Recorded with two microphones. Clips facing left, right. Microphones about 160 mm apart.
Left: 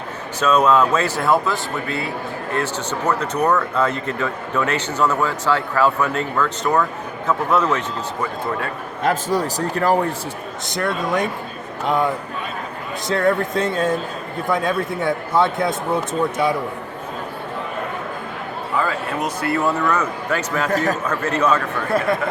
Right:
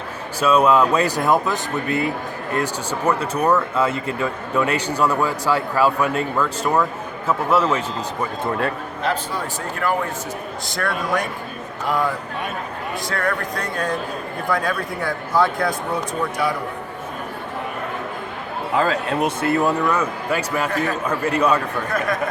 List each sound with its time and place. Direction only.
0.3 s speech: 10° right (ahead or behind)
9.0 s a man's voice: 40° left (ahead or behind)
10.7 s a man's voice: 20° left (ahead or behind)
19.2 s speech: 25° right (ahead or behind)
20.7 s a man's voice: 40° left (ahead or behind)
21.1 s speech: 10° right (ahead or behind)